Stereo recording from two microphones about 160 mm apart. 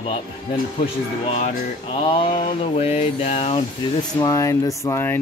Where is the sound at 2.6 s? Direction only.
40° left (ahead or behind).